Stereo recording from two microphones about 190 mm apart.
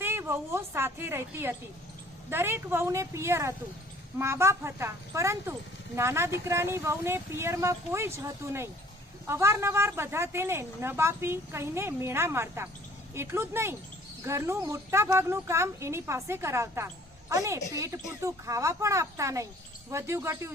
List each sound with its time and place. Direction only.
0.0 s a woman's voice: 15° right (ahead or behind)